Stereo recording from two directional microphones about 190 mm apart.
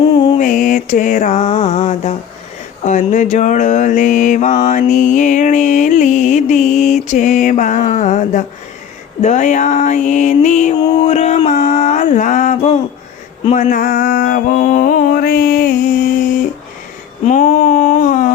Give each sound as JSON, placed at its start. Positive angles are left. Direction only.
{"t": 0.0, "sound": "mantra", "side_deg": 25}
{"t": 0.3, "sound": "mantra", "side_deg": 45}
{"t": 10.8, "sound": "mantra", "side_deg": 30}
{"t": 17.2, "sound": "a sound", "side_deg": 40}